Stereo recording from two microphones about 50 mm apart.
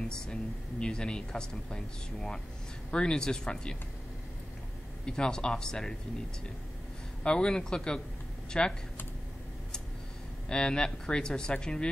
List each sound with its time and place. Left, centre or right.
0.1 s speech: centre
5.0 s speech: centre
7.2 s speech: centre
10.5 s speech: centre